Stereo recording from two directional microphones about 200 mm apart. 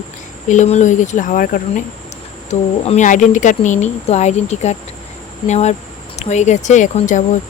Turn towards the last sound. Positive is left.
turn(degrees=40)  # may be behind; listen again after turning